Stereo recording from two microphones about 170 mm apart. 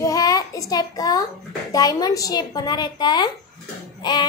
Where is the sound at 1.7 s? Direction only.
20° left (ahead or behind).